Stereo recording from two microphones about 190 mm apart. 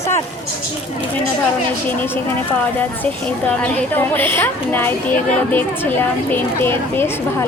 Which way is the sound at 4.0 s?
10° left (ahead or behind).